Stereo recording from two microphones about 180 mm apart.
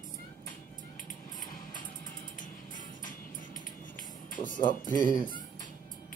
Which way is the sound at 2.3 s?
45° left (ahead or behind).